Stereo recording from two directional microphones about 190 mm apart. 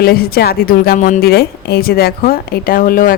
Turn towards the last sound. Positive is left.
turn(degrees=50)  # may be behind; listen again after turning